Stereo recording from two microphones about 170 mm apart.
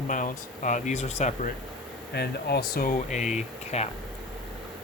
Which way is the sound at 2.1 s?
70° left (ahead or behind).